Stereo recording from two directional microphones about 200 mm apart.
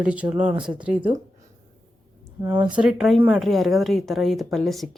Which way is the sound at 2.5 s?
25° right (ahead or behind).